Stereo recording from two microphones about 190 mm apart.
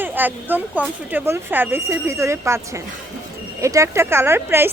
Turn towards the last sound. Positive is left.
turn(degrees=-15)  # may be behind; listen again after turning